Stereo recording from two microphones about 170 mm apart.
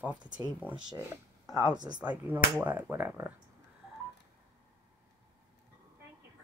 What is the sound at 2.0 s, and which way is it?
Speech, 10° right (ahead or behind).